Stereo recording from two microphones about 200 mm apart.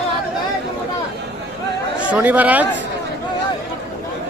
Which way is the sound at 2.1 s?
10° right (ahead or behind).